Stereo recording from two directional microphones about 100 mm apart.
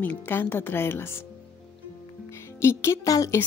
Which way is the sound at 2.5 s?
25° left (ahead or behind).